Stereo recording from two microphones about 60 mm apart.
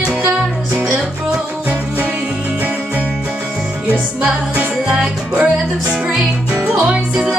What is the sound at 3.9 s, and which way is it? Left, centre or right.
Music, centre.